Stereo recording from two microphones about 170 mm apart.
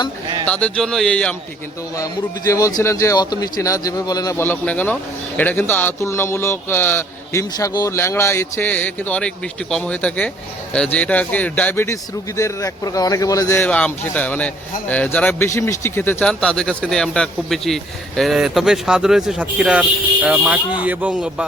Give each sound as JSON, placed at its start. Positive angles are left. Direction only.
{"t": 0.4, "sound": "speech", "side_deg": 5}
{"t": 2.0, "sound": "a man's voice", "side_deg": 20}
{"t": 7.5, "sound": "a man's voice", "side_deg": 25}